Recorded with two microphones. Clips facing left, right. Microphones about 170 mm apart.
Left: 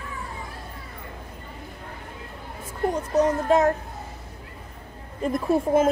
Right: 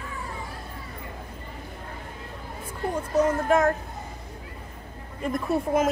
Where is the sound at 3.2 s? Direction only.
25° left (ahead or behind).